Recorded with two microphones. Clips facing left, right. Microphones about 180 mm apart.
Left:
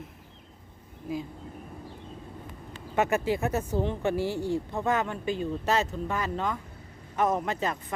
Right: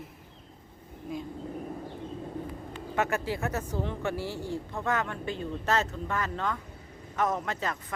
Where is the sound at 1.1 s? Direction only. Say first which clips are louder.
Left 3 dB; 5° left (ahead or behind).